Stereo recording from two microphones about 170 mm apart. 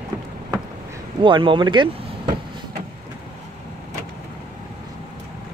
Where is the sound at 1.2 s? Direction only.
30° right (ahead or behind).